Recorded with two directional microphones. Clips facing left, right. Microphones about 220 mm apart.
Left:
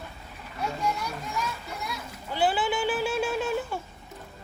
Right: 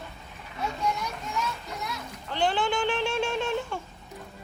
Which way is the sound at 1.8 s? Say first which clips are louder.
Even; 5° left (ahead or behind).